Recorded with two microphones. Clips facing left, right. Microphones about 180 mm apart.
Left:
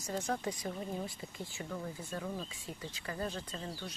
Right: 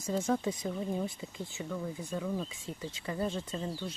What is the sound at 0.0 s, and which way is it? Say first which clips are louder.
Speech: right 5 dB; 25° right (ahead or behind).